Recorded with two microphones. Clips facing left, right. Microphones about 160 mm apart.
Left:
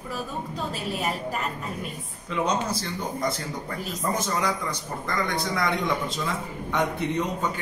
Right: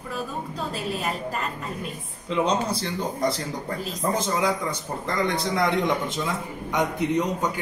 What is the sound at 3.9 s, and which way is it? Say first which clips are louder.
A man's voice: right 2 dB; 25° right (ahead or behind).